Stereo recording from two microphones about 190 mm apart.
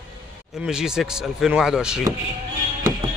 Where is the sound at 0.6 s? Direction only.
5° right (ahead or behind).